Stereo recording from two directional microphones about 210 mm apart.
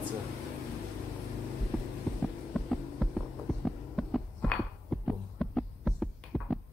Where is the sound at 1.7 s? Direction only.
Centre (ahead or behind).